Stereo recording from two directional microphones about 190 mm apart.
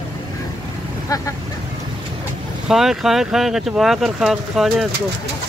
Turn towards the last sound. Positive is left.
turn(degrees=0)  # may be behind; listen again after turning